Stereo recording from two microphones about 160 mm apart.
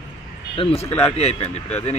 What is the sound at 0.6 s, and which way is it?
Speech, 40° left (ahead or behind).